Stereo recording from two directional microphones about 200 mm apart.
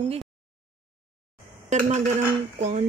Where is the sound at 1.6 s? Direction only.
35° right (ahead or behind).